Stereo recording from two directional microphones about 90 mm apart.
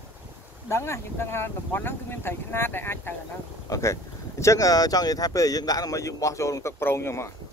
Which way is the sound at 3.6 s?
35° left (ahead or behind).